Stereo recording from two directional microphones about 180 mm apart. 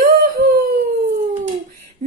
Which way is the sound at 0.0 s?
50° right (ahead or behind).